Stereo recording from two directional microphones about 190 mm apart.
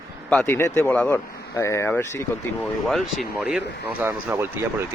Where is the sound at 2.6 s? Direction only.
Centre (ahead or behind).